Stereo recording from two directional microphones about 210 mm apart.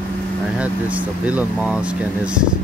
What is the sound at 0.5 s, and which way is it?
Speech, 5° right (ahead or behind).